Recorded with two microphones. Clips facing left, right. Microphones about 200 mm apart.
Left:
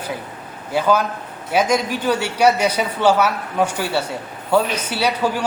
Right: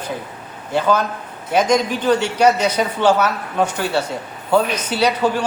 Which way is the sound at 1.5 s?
10° left (ahead or behind).